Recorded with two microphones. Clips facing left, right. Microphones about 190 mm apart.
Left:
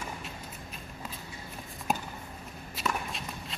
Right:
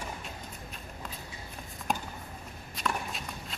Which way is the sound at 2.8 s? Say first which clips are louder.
Even; 5° left (ahead or behind).